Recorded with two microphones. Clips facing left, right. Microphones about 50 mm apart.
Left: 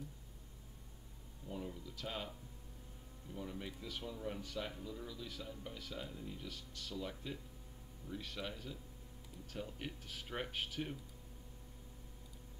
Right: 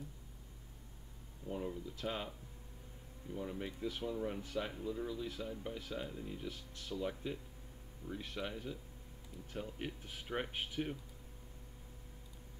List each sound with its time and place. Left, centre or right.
1.5 s speech: right
2.0 s speech: centre
3.3 s speech: centre